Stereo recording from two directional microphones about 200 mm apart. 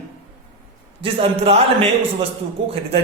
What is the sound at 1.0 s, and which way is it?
A man's voice, 30° right (ahead or behind).